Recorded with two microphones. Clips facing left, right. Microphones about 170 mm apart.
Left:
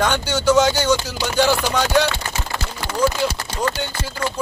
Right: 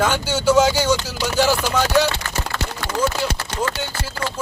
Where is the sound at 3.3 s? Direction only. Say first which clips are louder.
Left 1 dB; 65° right (ahead or behind).